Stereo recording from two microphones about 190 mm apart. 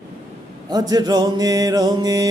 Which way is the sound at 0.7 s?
20° right (ahead or behind).